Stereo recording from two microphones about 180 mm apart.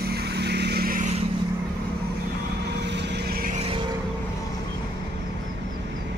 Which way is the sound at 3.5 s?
35° right (ahead or behind).